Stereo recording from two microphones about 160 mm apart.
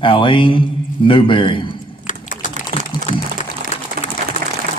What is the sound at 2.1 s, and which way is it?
Typing, 55° left (ahead or behind).